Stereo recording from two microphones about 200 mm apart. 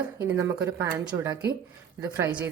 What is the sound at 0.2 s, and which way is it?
Speech, 10° right (ahead or behind).